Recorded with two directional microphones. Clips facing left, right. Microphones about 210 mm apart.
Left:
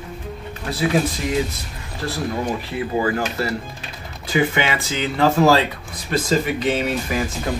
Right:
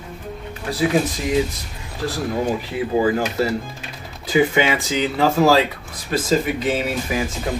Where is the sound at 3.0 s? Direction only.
15° right (ahead or behind).